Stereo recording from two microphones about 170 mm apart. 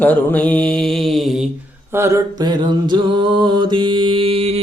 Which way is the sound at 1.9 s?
15° right (ahead or behind).